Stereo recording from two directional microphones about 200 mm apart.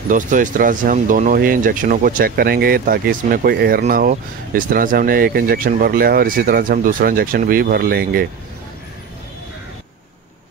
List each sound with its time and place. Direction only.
0.1 s speech: 40° right (ahead or behind)